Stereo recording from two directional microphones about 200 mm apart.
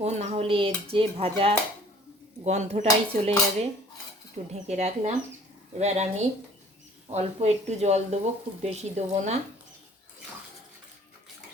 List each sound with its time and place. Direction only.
0.0 s dishes: 35° right (ahead or behind)
2.4 s speech: 35° right (ahead or behind)
4.4 s speech: 40° right (ahead or behind)